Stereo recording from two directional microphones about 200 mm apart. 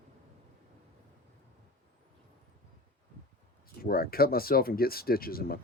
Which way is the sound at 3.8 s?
50° left (ahead or behind).